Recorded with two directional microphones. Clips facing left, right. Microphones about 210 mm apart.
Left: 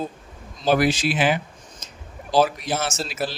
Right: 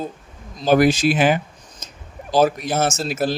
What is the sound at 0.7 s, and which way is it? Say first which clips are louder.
Speech: right 4 dB; 45° right (ahead or behind).